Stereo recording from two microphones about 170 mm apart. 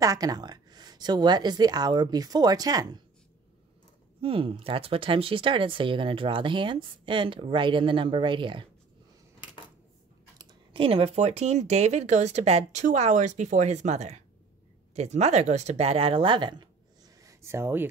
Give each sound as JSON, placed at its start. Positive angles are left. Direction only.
{"t": 0.0, "sound": "a woman's voice", "side_deg": -20}
{"t": 4.2, "sound": "speech", "side_deg": -35}
{"t": 10.3, "sound": "speech", "side_deg": -25}
{"t": 17.2, "sound": "a sound", "side_deg": -15}